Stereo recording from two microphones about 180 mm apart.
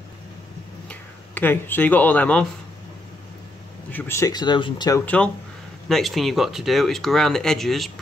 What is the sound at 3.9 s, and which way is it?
Speech, 10° left (ahead or behind).